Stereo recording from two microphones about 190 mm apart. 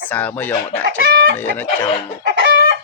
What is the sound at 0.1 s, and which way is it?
Speech, 10° left (ahead or behind).